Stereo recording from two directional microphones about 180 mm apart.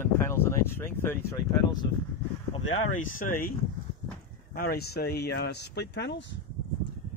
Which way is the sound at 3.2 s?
50° left (ahead or behind).